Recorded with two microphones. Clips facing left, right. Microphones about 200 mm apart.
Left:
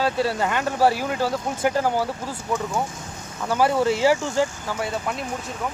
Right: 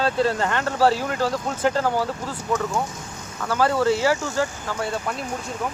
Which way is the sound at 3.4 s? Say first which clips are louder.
Even; 15° left (ahead or behind).